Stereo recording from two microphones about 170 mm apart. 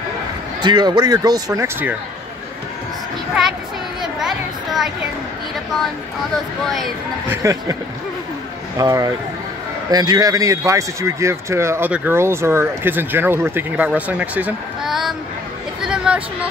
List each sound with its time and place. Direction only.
0.6 s speech: 25° right (ahead or behind)
4.0 s children playing: centre (ahead or behind)
6.3 s speech: centre (ahead or behind)
7.2 s speech: 20° right (ahead or behind)
8.7 s speech: 20° right (ahead or behind); by 15.1 s centre (ahead or behind)
15.8 s a sound: 5° right (ahead or behind)